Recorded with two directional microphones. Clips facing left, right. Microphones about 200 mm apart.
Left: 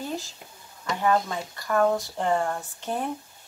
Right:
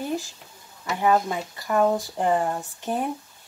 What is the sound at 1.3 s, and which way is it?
Speech, 15° right (ahead or behind).